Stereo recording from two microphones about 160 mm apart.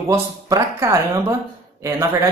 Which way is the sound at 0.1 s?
15° right (ahead or behind).